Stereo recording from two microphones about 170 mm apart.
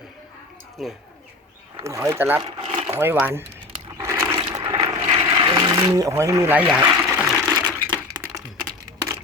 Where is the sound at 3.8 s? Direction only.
15° right (ahead or behind).